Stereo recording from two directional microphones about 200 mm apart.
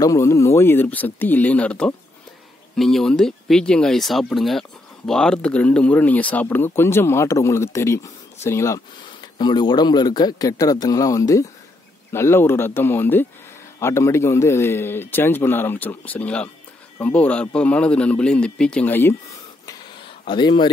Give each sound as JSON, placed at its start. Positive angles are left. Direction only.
{"t": 0.0, "sound": "a man's voice", "side_deg": 15}
{"t": 20.2, "sound": "speech", "side_deg": 25}